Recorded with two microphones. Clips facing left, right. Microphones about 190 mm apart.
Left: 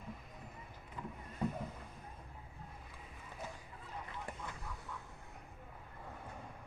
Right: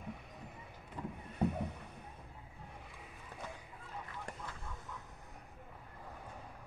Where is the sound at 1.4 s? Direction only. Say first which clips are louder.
Right 4 dB; 65° right (ahead or behind).